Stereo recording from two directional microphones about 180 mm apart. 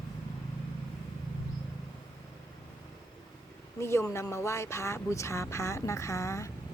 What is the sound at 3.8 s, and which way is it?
Speech, 15° left (ahead or behind).